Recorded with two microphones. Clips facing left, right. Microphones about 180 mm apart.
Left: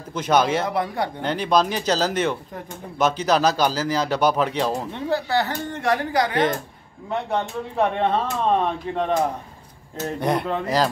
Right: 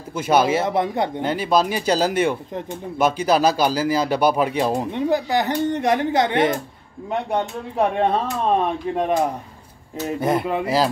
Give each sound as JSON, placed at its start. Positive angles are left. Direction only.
{"t": 0.1, "sound": "speech", "side_deg": -10}
{"t": 0.7, "sound": "speech", "side_deg": -20}
{"t": 1.2, "sound": "speech", "side_deg": -5}
{"t": 7.1, "sound": "speech", "side_deg": -15}